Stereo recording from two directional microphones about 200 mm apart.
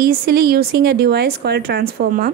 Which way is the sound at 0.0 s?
50° right (ahead or behind).